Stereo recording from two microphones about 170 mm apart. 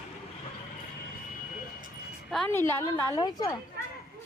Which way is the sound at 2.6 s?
15° left (ahead or behind).